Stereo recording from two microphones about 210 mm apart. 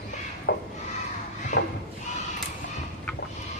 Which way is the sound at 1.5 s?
35° left (ahead or behind).